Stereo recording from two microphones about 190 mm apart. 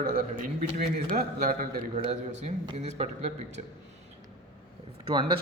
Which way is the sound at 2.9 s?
35° right (ahead or behind).